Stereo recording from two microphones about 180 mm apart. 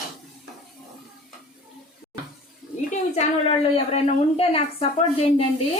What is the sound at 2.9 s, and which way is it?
A woman's voice, 35° left (ahead or behind).